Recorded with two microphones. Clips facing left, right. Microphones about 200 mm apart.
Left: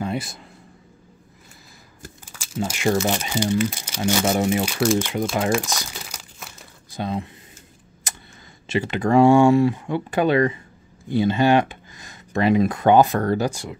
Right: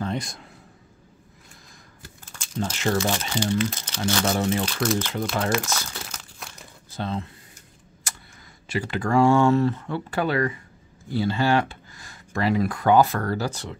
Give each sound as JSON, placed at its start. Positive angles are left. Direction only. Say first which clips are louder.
{"t": 0.0, "sound": "a sound", "louder": "left 2 dB", "side_deg": 5}
{"t": 2.3, "sound": "speech", "louder": "left 2 dB", "side_deg": 5}
{"t": 5.7, "sound": "crumpling", "louder": "even", "side_deg": 15}
{"t": 8.1, "sound": "tick", "louder": "left 3 dB", "side_deg": 20}
{"t": 8.6, "sound": "speech", "louder": "left 5 dB", "side_deg": 20}